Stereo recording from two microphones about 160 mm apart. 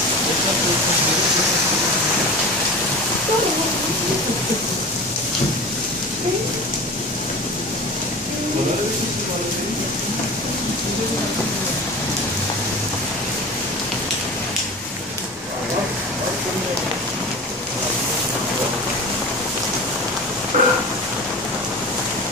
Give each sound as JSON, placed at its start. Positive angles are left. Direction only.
{"t": 20.5, "sound": "vehicle", "side_deg": -50}